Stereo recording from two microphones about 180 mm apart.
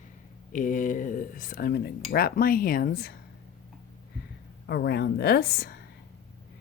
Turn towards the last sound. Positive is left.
turn(degrees=60)  # may be behind; listen again after turning